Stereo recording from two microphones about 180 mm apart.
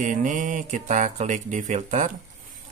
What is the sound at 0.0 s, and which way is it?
Speech, 45° right (ahead or behind).